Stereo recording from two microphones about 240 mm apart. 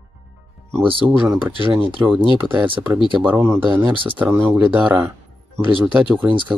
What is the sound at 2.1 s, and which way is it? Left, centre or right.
Speech, centre.